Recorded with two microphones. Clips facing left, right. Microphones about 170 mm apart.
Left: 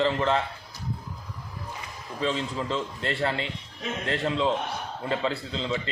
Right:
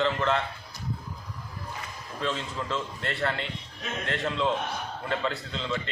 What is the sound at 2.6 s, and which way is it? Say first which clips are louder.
Speech: left 2 dB; 35° left (ahead or behind).